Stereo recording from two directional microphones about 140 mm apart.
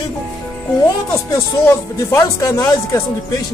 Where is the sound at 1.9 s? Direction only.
20° left (ahead or behind).